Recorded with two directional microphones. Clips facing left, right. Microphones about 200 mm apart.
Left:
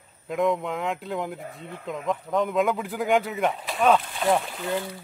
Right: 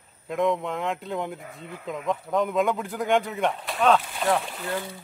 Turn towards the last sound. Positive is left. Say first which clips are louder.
# left 2 dB
turn(degrees=0)  # may be behind; listen again after turning